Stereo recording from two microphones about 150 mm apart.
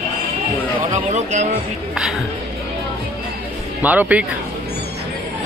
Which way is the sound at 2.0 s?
5° right (ahead or behind).